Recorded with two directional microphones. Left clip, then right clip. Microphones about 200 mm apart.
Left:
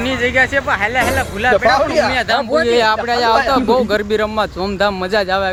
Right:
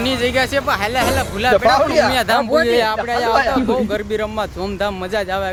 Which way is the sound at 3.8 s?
20° left (ahead or behind).